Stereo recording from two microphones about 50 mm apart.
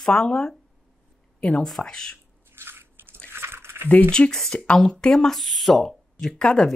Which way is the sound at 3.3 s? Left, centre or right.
Right.